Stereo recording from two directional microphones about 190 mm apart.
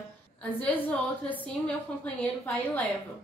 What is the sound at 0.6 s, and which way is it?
Speech, 10° left (ahead or behind).